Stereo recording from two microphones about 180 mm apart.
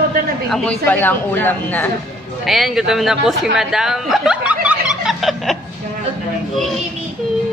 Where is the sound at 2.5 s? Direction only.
Centre (ahead or behind).